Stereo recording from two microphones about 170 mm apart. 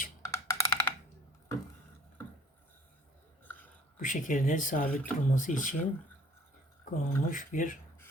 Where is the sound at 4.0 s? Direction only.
50° left (ahead or behind).